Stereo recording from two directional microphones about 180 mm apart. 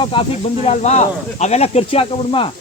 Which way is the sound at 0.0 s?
30° left (ahead or behind).